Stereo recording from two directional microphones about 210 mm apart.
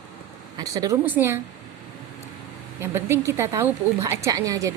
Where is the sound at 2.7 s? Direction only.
10° right (ahead or behind).